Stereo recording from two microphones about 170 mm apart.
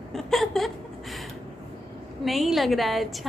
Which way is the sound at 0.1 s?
Centre (ahead or behind).